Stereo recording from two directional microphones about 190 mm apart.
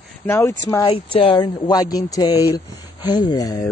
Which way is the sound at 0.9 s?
30° left (ahead or behind).